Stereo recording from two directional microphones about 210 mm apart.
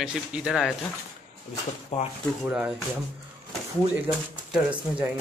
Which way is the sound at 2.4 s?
5° right (ahead or behind).